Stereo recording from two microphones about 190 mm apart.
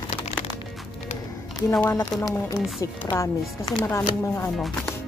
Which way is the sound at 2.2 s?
20° left (ahead or behind).